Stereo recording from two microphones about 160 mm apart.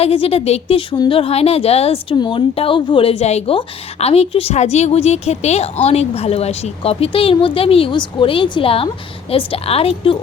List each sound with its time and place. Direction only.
0.0 s a woman's voice: 35° left (ahead or behind)